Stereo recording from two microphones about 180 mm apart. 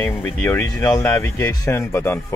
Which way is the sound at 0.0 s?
10° left (ahead or behind).